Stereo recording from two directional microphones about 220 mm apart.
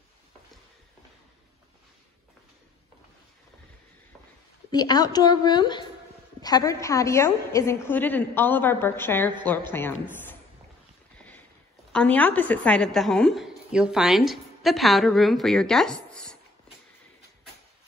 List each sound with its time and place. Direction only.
4.6 s a woman's voice: 20° left (ahead or behind)
11.1 s boat: 5° left (ahead or behind)
11.9 s a woman's voice: 5° left (ahead or behind)